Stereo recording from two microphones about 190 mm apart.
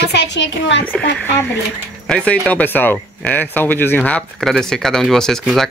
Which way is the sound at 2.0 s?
5° left (ahead or behind).